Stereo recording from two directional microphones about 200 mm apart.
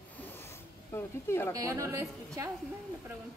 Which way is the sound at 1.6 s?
15° right (ahead or behind).